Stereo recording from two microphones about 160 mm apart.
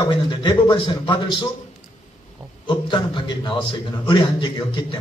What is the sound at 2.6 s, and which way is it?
A man's voice, 30° left (ahead or behind).